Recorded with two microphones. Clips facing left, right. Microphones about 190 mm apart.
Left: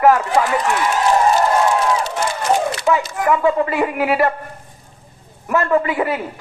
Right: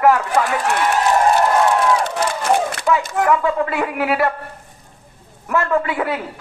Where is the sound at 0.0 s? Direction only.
Centre (ahead or behind).